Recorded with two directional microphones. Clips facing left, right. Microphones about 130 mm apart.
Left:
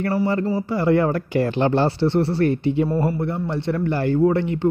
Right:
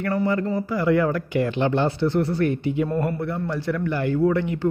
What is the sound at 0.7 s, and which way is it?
Speech, 30° left (ahead or behind).